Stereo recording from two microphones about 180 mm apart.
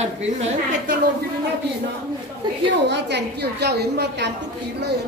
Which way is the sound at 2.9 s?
75° right (ahead or behind).